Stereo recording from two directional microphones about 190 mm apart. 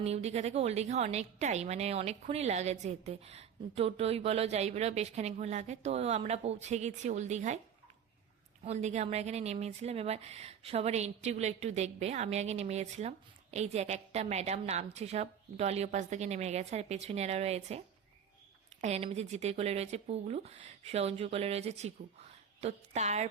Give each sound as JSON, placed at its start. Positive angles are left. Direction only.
{"t": 0.0, "sound": "a woman's voice", "side_deg": -35}
{"t": 8.6, "sound": "a woman's voice", "side_deg": -35}